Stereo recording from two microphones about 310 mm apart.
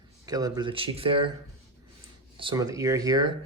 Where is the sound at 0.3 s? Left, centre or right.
Centre.